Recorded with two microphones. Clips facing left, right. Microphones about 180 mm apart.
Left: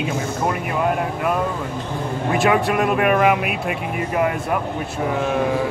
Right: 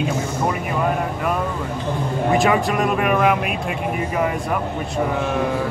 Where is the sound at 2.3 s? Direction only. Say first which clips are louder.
Left 1 dB; centre (ahead or behind).